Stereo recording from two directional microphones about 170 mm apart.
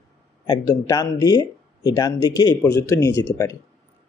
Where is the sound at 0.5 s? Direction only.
20° left (ahead or behind).